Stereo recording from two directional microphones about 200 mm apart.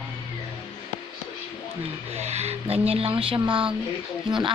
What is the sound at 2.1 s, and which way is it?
Speech, 35° right (ahead or behind).